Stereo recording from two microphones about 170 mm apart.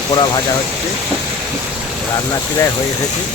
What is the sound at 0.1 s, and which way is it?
Speech, 25° left (ahead or behind).